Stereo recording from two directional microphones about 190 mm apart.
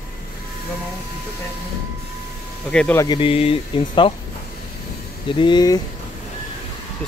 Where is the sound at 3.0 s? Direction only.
25° left (ahead or behind).